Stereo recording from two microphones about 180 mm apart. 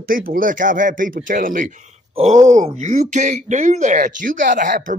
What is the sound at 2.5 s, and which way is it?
Speech, 40° right (ahead or behind).